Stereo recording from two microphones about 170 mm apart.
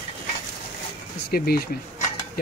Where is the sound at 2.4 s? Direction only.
65° left (ahead or behind).